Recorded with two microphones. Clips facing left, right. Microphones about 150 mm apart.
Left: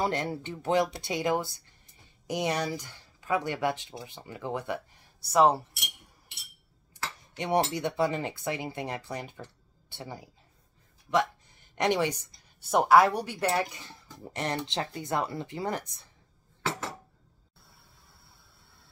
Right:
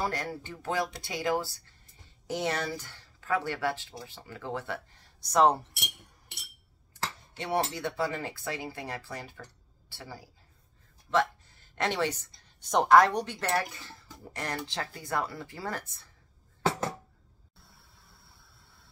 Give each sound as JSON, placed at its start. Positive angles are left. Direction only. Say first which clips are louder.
{"t": 0.0, "sound": "speech", "louder": "left 3 dB", "side_deg": 25}
{"t": 7.3, "sound": "speech", "louder": "left 3 dB", "side_deg": 20}